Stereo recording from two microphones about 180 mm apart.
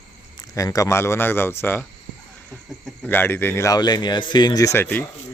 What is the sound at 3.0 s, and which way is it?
A man's voice, 10° left (ahead or behind).